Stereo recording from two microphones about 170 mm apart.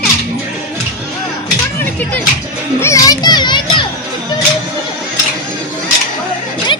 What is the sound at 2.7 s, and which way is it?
Children playing, 15° left (ahead or behind).